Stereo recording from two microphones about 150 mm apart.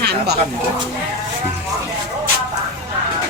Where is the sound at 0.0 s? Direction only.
90° right.